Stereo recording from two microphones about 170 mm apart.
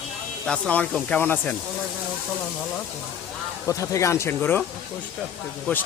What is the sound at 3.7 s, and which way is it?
Speech, 20° left (ahead or behind).